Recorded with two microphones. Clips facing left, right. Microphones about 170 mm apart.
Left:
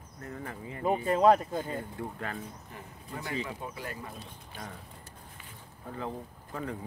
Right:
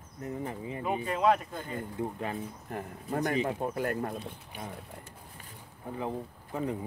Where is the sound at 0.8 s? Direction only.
35° left (ahead or behind).